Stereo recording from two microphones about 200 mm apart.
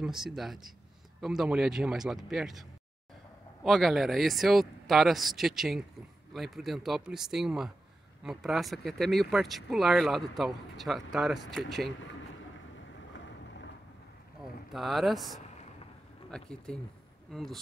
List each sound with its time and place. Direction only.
0.0 s speech: centre (ahead or behind)
3.6 s speech: centre (ahead or behind)
13.1 s boat: 60° left (ahead or behind)
14.7 s speech: centre (ahead or behind)